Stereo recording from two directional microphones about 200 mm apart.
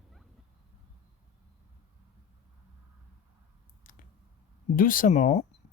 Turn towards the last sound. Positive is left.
turn(degrees=40)  # may be behind; listen again after turning